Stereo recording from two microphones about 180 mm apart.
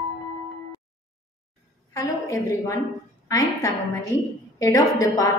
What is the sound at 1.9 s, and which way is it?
A woman's voice, 20° left (ahead or behind).